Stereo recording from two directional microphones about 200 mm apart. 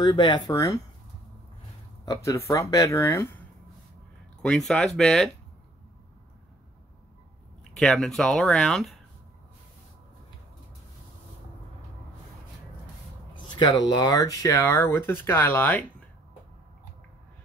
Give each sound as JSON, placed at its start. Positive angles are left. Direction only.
{"t": 0.0, "sound": "speech", "side_deg": 25}
{"t": 2.0, "sound": "speech", "side_deg": 15}
{"t": 4.4, "sound": "speech", "side_deg": 5}
{"t": 7.7, "sound": "speech", "side_deg": 5}
{"t": 13.3, "sound": "speech", "side_deg": 20}